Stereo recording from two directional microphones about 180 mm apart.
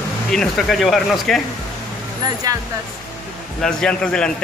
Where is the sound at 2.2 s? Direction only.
20° right (ahead or behind).